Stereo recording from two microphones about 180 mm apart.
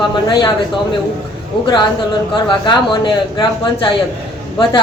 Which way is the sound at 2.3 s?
25° left (ahead or behind).